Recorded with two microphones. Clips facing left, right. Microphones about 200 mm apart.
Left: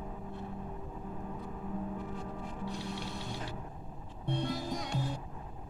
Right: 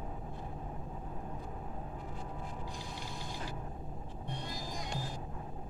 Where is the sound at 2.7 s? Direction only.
65° left (ahead or behind).